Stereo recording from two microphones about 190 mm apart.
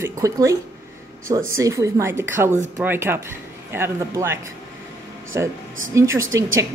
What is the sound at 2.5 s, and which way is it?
Speech, 40° right (ahead or behind).